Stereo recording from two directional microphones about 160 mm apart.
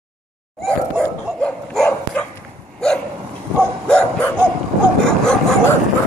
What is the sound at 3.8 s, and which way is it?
Dog, 5° left (ahead or behind).